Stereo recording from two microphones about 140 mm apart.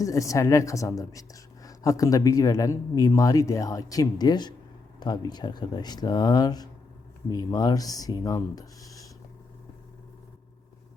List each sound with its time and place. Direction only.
0.0 s speech: 25° left (ahead or behind)